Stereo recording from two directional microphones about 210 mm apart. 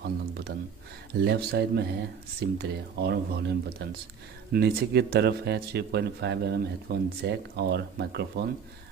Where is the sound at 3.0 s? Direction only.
50° right (ahead or behind).